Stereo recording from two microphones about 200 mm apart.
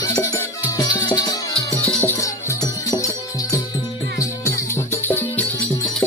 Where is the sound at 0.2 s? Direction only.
15° left (ahead or behind).